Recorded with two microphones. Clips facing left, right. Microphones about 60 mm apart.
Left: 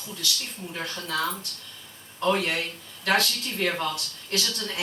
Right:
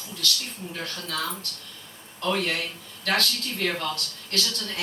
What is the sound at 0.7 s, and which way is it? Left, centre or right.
Speech, centre.